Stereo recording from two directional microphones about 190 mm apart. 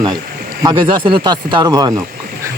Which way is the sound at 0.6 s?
25° right (ahead or behind).